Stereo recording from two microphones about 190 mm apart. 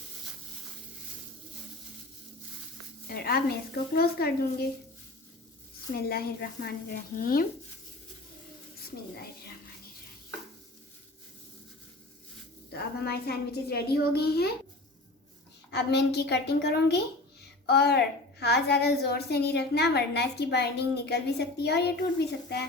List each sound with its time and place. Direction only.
3.1 s speech: 55° left (ahead or behind)
5.9 s a child's voice: 55° left (ahead or behind)
12.7 s a child's voice: 55° left (ahead or behind)
15.7 s a child's voice: 60° left (ahead or behind)